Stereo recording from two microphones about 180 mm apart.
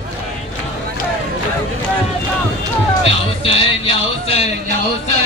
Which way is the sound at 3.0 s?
30° left (ahead or behind).